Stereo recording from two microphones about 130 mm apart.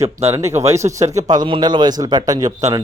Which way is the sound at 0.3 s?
20° right (ahead or behind).